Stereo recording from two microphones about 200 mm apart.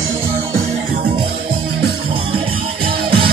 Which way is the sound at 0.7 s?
30° right (ahead or behind).